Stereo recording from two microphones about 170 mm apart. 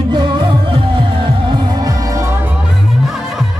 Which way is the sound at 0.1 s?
25° right (ahead or behind).